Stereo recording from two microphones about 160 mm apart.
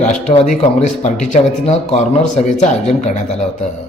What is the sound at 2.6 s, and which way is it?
Speech, 45° left (ahead or behind).